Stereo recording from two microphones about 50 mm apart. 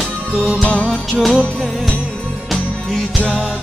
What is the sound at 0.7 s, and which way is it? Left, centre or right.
Music, left.